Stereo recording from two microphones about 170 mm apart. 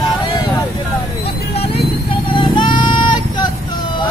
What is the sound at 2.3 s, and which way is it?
Vehicle, 25° left (ahead or behind).